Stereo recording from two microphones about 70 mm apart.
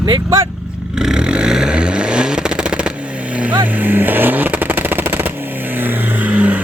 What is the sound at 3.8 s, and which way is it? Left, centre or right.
Vehicle, right.